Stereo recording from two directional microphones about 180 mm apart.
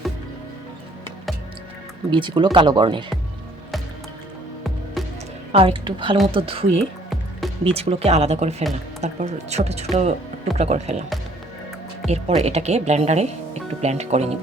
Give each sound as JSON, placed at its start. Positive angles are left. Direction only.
{"t": 2.0, "sound": "speech", "side_deg": -25}
{"t": 5.0, "sound": "music", "side_deg": 0}
{"t": 5.5, "sound": "speech", "side_deg": -30}
{"t": 12.0, "sound": "speech", "side_deg": -35}